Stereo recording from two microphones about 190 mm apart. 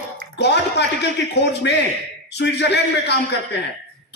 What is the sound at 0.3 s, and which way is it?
A man's voice, 65° left (ahead or behind).